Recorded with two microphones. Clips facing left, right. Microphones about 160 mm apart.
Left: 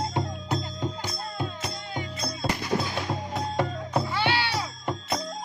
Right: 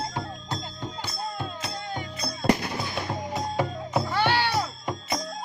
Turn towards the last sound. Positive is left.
turn(degrees=0)  # may be behind; listen again after turning